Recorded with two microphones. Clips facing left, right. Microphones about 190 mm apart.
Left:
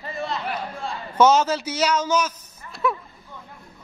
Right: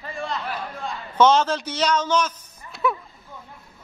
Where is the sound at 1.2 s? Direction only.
10° left (ahead or behind).